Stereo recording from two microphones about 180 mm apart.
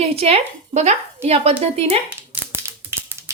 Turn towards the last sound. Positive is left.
turn(degrees=-10)  # may be behind; listen again after turning